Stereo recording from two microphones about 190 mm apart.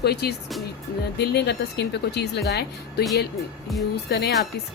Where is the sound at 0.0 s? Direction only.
60° left (ahead or behind).